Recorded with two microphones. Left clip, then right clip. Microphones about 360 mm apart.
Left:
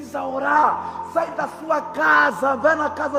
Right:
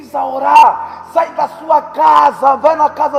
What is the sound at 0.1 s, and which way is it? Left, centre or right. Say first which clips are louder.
Speech: right 9 dB; right.